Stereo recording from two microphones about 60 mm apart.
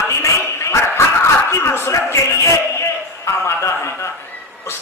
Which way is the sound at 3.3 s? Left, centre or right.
Left.